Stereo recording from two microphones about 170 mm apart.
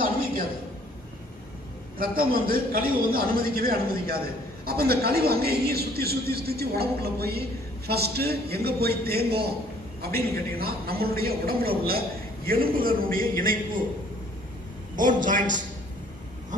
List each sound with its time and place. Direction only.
2.0 s a man's voice: 60° right (ahead or behind)
14.9 s a man's voice: 50° right (ahead or behind)